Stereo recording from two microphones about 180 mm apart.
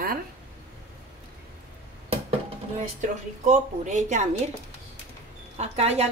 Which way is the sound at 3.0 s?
40° right (ahead or behind).